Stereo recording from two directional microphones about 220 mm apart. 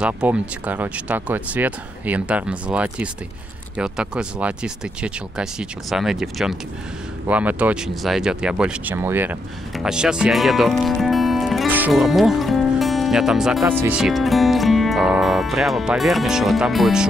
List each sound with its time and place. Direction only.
0.0 s speech: 5° right (ahead or behind)